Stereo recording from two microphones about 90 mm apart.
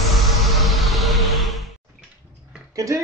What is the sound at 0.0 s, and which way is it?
Music, centre (ahead or behind).